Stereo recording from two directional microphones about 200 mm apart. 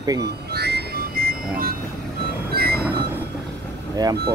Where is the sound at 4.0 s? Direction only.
20° right (ahead or behind).